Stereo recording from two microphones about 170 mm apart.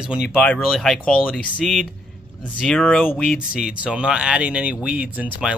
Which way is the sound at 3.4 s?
5° right (ahead or behind).